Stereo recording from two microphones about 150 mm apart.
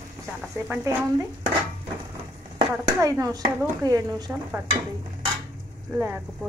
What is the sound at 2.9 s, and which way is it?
Speech, 20° right (ahead or behind).